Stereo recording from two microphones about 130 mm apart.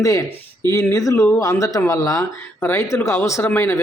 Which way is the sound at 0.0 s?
25° left (ahead or behind).